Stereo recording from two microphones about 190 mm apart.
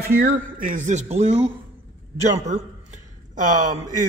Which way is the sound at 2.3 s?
40° right (ahead or behind).